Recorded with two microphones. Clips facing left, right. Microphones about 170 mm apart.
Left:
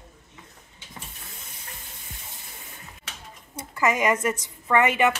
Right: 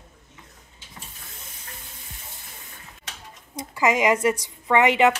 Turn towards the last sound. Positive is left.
turn(degrees=-15)  # may be behind; listen again after turning